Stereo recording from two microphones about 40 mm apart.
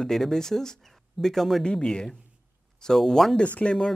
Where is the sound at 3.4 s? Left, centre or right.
Left.